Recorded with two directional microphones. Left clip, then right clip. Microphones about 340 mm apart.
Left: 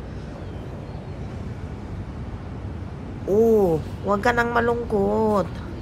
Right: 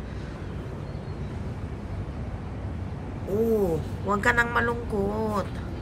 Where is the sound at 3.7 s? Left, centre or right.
Centre.